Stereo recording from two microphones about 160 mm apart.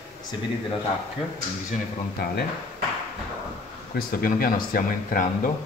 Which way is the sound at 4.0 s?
65° left (ahead or behind).